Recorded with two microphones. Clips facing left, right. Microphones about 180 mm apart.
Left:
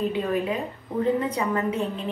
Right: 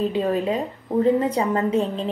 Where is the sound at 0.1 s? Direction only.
30° right (ahead or behind).